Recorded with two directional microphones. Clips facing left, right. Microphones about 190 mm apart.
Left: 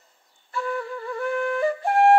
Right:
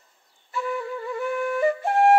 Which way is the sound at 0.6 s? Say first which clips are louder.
Even; 10° right (ahead or behind).